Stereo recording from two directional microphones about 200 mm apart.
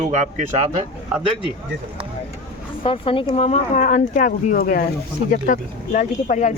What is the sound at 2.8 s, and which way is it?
Speech, 25° left (ahead or behind).